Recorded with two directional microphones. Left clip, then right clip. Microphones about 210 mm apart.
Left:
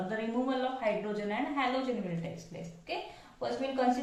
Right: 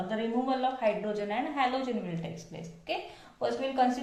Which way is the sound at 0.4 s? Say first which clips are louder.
Right 4 dB; 45° right (ahead or behind).